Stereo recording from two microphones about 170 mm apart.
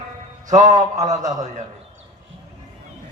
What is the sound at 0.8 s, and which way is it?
Speech, 45° right (ahead or behind).